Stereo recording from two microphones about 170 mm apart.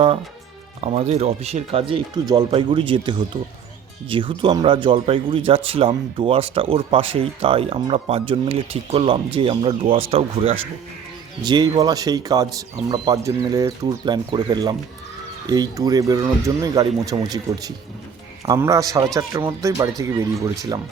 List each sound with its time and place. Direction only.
0.9 s a man's voice: 35° right (ahead or behind); by 19.9 s 20° right (ahead or behind)